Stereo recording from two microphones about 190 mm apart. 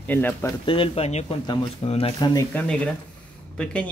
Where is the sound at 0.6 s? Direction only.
30° left (ahead or behind).